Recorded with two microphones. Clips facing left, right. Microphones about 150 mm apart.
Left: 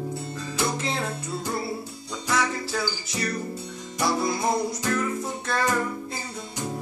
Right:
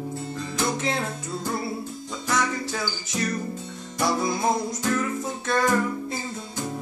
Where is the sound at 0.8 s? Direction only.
Centre (ahead or behind).